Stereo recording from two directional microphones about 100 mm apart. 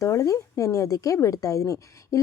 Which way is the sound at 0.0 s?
30° left (ahead or behind).